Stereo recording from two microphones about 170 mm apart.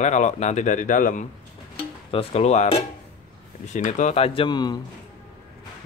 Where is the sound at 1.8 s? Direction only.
35° left (ahead or behind).